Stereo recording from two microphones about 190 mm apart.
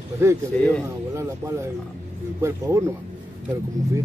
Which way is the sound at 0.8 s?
15° right (ahead or behind).